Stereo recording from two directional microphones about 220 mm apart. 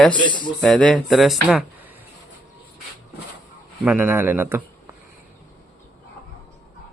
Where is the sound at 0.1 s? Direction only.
20° left (ahead or behind).